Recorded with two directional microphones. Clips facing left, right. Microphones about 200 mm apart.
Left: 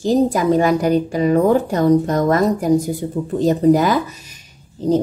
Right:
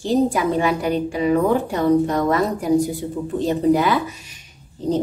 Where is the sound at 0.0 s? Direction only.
40° left (ahead or behind).